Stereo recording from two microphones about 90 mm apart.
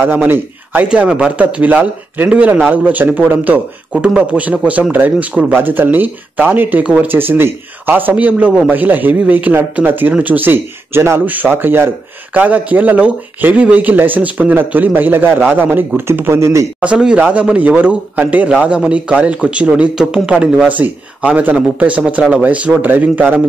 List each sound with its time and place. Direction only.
0.0 s speech: 20° right (ahead or behind)
16.8 s speech: 10° right (ahead or behind)